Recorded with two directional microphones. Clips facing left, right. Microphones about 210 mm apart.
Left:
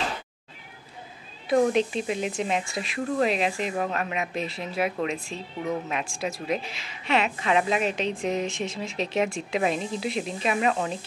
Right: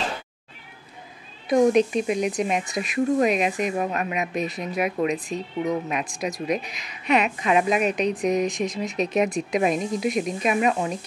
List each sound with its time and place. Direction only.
1.9 s speech: 15° right (ahead or behind)